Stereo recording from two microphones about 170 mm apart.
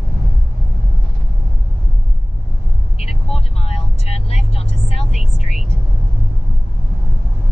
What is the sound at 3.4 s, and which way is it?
Vehicle, 35° left (ahead or behind).